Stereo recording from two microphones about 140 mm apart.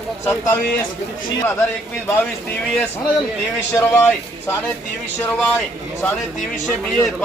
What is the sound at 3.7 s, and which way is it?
A man's voice, 15° left (ahead or behind).